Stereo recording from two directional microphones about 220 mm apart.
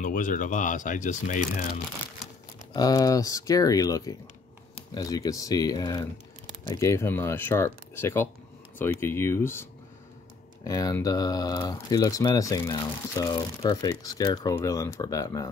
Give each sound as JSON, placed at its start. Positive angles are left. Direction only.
{"t": 0.0, "sound": "speech", "side_deg": 35}
{"t": 2.7, "sound": "speech", "side_deg": 15}